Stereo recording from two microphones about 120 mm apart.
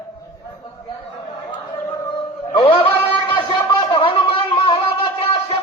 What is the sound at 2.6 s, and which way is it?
Music, 50° left (ahead or behind).